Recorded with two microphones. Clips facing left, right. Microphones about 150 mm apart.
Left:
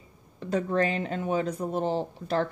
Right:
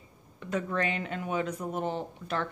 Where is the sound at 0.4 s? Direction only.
35° left (ahead or behind).